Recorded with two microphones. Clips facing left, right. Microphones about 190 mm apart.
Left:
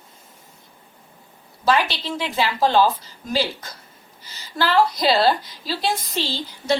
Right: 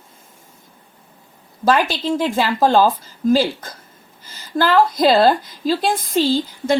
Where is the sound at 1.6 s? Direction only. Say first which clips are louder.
Right 4 dB; 50° right (ahead or behind).